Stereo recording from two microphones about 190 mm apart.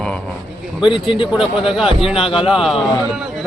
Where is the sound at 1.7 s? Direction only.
Centre (ahead or behind).